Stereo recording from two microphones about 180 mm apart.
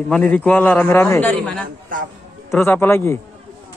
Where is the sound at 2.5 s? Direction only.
15° left (ahead or behind).